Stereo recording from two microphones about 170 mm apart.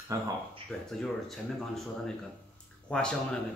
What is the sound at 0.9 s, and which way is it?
Speech, centre (ahead or behind).